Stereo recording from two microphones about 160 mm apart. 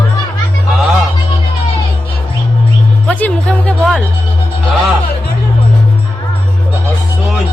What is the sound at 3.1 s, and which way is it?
Music, 10° left (ahead or behind).